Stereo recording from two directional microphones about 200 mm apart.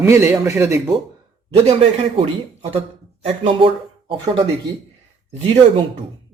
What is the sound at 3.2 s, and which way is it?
Speech, 30° right (ahead or behind).